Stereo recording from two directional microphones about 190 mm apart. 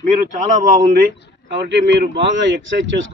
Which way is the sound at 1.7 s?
70° right (ahead or behind).